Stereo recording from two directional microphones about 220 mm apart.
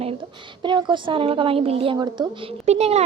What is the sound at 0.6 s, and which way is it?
A woman's voice, 20° right (ahead or behind).